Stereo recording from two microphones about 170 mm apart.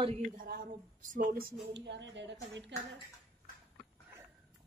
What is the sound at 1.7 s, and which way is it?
Speech, 90° right.